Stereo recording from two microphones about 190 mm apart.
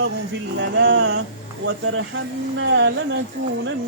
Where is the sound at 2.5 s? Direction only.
75° right (ahead or behind).